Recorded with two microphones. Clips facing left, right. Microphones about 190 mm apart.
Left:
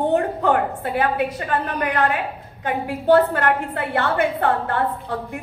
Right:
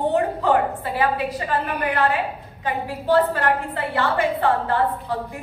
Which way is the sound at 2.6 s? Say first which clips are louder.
Left 4 dB; 60° left (ahead or behind).